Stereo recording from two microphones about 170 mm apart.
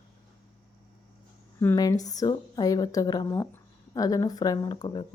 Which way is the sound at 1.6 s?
15° left (ahead or behind).